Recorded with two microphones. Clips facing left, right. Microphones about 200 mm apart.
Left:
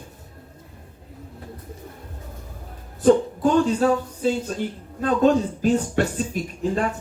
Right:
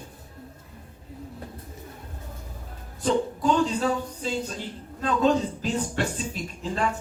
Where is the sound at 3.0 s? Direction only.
50° left (ahead or behind).